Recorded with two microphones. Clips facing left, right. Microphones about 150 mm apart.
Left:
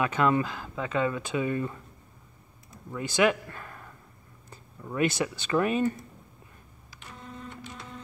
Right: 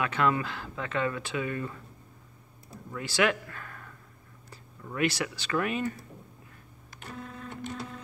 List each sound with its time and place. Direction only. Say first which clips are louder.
0.0 s speech: left 3 dB; 20° left (ahead or behind)
2.9 s a man's voice: left 3 dB; 20° left (ahead or behind)
4.5 s a sound: left 3 dB; 20° left (ahead or behind)
5.5 s speech: left 5 dB; 30° left (ahead or behind)
6.9 s printer: right 3 dB; 50° right (ahead or behind)